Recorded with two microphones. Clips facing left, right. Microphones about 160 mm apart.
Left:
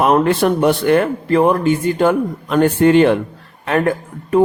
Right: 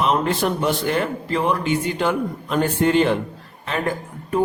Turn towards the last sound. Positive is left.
turn(degrees=60)  # may be behind; listen again after turning